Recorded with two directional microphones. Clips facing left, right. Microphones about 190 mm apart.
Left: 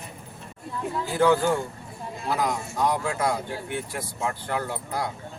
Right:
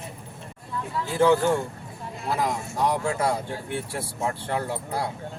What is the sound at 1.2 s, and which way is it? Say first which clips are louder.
Speech: right 1 dB; 5° left (ahead or behind).